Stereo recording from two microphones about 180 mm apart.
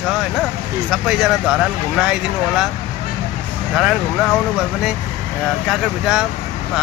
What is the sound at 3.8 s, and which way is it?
Speech, centre (ahead or behind).